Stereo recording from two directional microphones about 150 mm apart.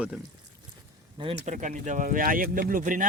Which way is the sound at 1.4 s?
55° right (ahead or behind).